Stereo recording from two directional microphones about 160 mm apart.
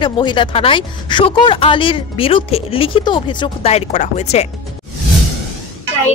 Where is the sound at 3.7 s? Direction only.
45° left (ahead or behind).